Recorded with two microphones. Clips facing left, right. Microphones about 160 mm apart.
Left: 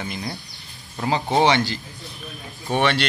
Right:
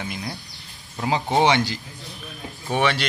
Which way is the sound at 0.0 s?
5° right (ahead or behind).